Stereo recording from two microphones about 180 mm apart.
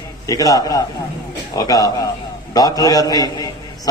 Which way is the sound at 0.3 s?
20° left (ahead or behind).